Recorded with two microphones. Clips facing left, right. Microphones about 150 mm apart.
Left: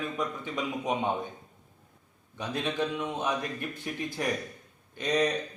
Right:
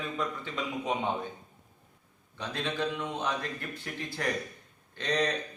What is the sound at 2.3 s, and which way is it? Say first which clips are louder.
A man's voice: left 3 dB; 15° left (ahead or behind).